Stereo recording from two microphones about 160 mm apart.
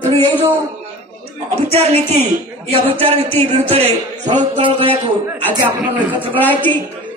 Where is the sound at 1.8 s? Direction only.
40° right (ahead or behind).